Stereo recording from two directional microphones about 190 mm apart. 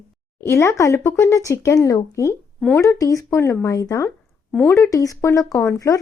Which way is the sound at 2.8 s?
15° left (ahead or behind).